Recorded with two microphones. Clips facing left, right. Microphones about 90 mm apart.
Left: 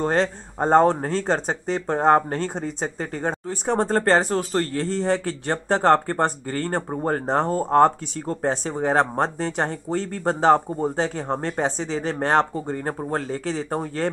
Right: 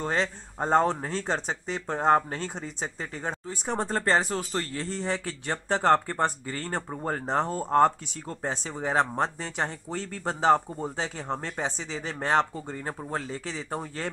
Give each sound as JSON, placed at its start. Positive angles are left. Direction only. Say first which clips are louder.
{"t": 0.0, "sound": "speech", "louder": "left 7 dB", "side_deg": 50}